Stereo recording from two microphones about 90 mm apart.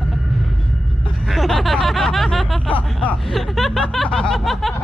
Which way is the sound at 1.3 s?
Centre (ahead or behind).